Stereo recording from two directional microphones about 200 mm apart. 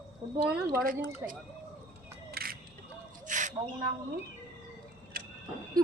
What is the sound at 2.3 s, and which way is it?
Single-lens reflex camera, 50° right (ahead or behind).